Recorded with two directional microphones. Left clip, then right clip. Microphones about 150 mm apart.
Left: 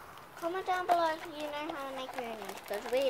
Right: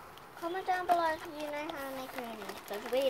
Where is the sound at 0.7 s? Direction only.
15° left (ahead or behind).